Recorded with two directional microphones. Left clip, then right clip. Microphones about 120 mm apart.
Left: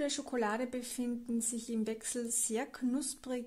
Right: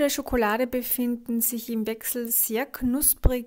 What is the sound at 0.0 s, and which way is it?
Speech, 55° right (ahead or behind).